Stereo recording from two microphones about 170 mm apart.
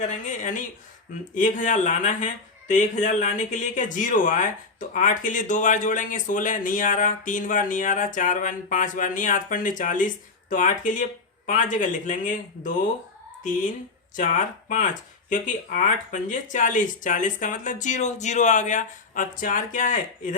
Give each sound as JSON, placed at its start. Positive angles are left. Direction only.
{"t": 0.0, "sound": "speech", "side_deg": 45}
{"t": 14.2, "sound": "speech", "side_deg": 50}